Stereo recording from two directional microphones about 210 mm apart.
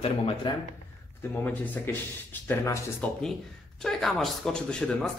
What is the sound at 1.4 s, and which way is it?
Speech, 10° left (ahead or behind).